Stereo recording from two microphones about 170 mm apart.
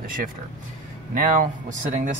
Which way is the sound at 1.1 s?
55° right (ahead or behind).